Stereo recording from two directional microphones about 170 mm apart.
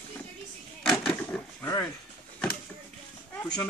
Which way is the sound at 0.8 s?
5° left (ahead or behind).